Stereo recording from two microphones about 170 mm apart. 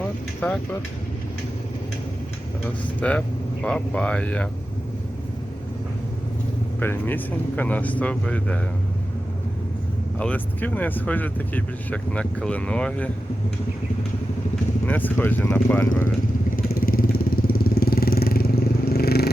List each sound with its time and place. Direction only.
0.4 s speech: 5° left (ahead or behind)
3.0 s speech: 5° left (ahead or behind)
6.7 s speech: 10° left (ahead or behind)
10.2 s speech: 10° left (ahead or behind)
14.8 s speech: 10° left (ahead or behind)
16.6 s vehicle: 60° left (ahead or behind)